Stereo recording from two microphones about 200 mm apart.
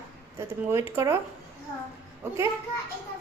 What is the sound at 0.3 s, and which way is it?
Speech, 15° right (ahead or behind).